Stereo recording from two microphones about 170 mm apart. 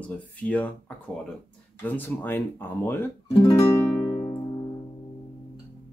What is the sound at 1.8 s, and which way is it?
Speech, 10° left (ahead or behind).